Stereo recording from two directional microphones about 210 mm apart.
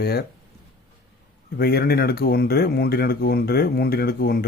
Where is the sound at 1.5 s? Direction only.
50° left (ahead or behind).